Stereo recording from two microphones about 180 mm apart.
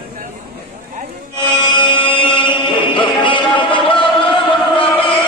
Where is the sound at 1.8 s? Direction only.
25° left (ahead or behind).